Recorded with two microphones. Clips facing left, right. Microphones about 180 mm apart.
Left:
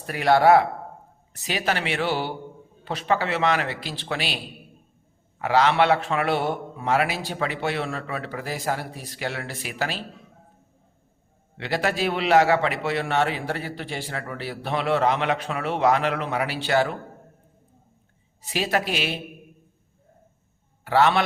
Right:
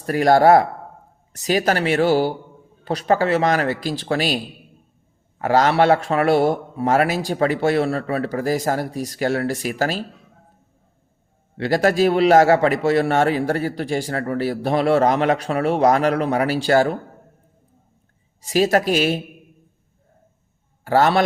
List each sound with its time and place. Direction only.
0.0 s a man's voice: 40° right (ahead or behind)
5.4 s a man's voice: 45° right (ahead or behind)
11.5 s a man's voice: 40° right (ahead or behind)
18.4 s a man's voice: 45° right (ahead or behind)
20.8 s a man's voice: 40° right (ahead or behind)